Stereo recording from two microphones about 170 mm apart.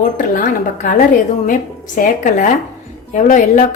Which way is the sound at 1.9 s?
50° left (ahead or behind).